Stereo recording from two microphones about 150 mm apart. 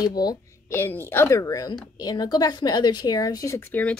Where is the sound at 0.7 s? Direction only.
15° left (ahead or behind).